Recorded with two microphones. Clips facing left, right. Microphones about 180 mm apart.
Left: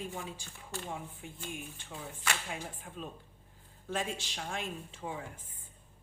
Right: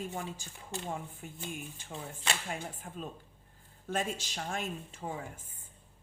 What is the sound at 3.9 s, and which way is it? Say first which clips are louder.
Speech: right 2 dB; 45° right (ahead or behind).